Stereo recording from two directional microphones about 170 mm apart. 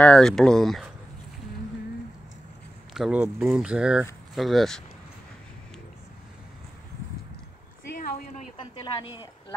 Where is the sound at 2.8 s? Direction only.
Centre (ahead or behind).